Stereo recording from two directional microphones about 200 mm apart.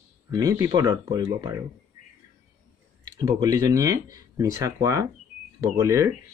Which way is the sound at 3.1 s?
15° right (ahead or behind).